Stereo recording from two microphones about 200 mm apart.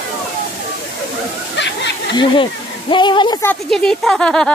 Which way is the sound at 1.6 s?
60° left (ahead or behind).